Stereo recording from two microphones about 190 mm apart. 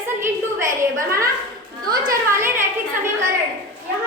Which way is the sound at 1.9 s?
15° right (ahead or behind).